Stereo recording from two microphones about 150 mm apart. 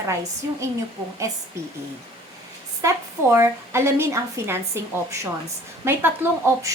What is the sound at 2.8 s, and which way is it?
A woman's voice, 20° right (ahead or behind).